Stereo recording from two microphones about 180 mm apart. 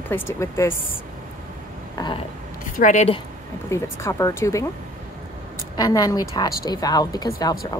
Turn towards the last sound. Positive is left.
turn(degrees=20)  # may be behind; listen again after turning